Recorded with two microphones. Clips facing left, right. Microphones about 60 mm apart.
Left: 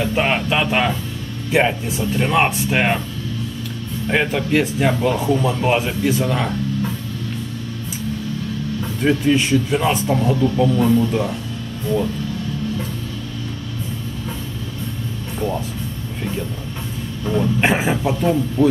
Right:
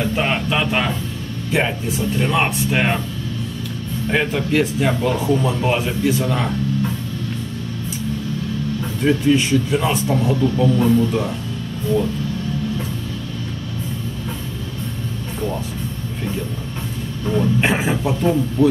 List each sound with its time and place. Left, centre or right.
0.0 s speech: centre
4.1 s speech: centre
9.0 s speech: centre
17.2 s speech: centre